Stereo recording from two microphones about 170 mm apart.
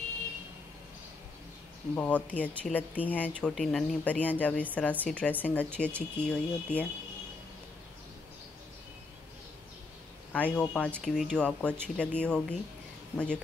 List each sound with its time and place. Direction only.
2.0 s speech: 10° left (ahead or behind)
10.3 s speech: 5° left (ahead or behind)